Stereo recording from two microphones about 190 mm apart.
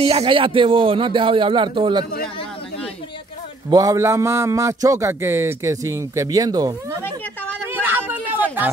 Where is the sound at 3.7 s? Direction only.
20° right (ahead or behind).